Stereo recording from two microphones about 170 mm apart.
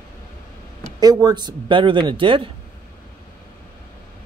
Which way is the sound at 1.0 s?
25° right (ahead or behind).